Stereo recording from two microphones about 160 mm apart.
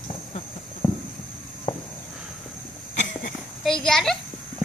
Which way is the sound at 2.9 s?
55° left (ahead or behind).